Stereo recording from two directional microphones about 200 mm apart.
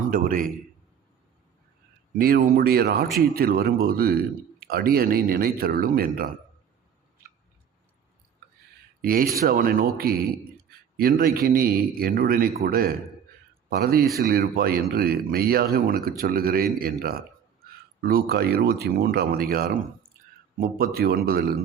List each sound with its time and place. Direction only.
0.1 s speech: 45° right (ahead or behind)
2.1 s speech: 50° right (ahead or behind)
9.0 s speech: 45° right (ahead or behind)